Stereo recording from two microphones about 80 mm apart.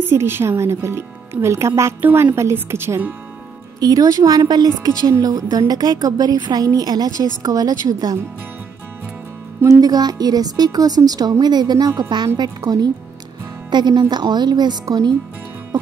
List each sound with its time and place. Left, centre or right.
0.0 s speech: right
2.0 s a woman's voice: right
3.8 s a woman's voice: right
9.8 s speech: right
13.7 s speech: right